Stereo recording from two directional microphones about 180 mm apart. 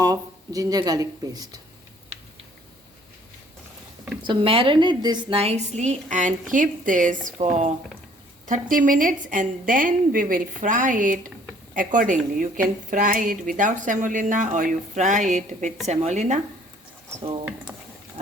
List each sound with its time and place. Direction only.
0.0 s speech: 20° right (ahead or behind)
4.2 s a woman's voice: 25° right (ahead or behind)